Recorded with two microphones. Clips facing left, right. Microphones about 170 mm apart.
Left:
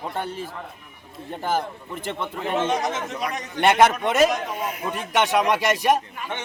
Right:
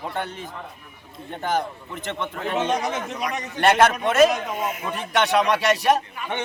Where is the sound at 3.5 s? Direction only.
15° left (ahead or behind).